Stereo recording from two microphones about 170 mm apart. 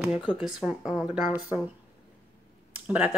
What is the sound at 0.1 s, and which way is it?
Speech, 30° left (ahead or behind).